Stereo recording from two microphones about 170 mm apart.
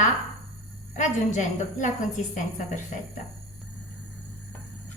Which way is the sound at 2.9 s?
50° left (ahead or behind).